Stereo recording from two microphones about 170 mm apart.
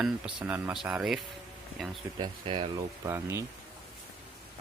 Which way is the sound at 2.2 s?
30° right (ahead or behind).